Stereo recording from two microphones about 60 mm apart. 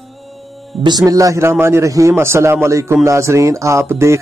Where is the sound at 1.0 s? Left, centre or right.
Right.